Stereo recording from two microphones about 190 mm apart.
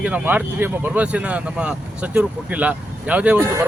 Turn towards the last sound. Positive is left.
turn(degrees=-10)  # may be behind; listen again after turning